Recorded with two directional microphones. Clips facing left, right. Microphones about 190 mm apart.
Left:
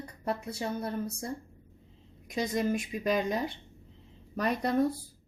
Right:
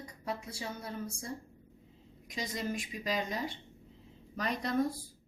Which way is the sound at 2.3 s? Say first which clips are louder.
Left 8 dB; 50° left (ahead or behind).